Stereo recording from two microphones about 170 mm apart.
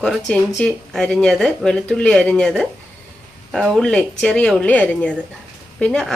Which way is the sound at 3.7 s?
5° left (ahead or behind).